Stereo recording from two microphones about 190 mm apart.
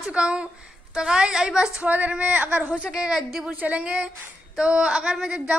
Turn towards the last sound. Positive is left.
turn(degrees=-5)  # may be behind; listen again after turning